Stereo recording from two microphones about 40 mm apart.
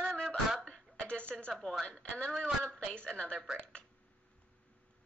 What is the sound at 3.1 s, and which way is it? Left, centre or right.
Speech, left.